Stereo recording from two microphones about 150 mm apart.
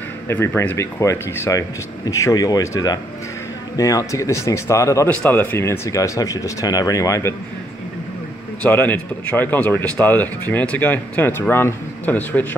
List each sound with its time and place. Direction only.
0.3 s speech: 15° left (ahead or behind)
8.6 s speech: 10° left (ahead or behind)